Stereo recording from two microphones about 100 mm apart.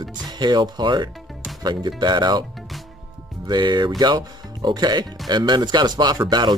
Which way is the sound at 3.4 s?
45° right (ahead or behind).